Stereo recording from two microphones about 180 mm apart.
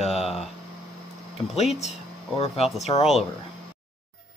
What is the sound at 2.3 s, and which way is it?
Speech, 35° left (ahead or behind).